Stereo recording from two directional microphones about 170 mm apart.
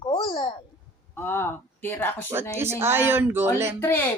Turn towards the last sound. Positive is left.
turn(degrees=15)  # may be behind; listen again after turning